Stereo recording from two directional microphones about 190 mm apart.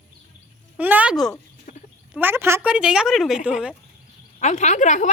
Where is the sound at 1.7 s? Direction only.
40° left (ahead or behind).